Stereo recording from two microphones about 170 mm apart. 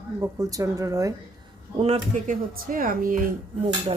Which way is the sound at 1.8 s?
40° right (ahead or behind).